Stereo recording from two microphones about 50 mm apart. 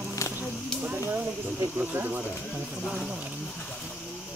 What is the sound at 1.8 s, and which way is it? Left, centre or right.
Speech, right.